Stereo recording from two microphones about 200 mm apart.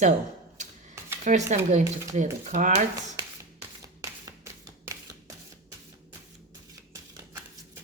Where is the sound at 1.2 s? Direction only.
35° right (ahead or behind).